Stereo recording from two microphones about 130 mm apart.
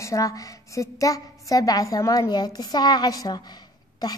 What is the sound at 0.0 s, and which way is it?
A woman's voice, 25° left (ahead or behind).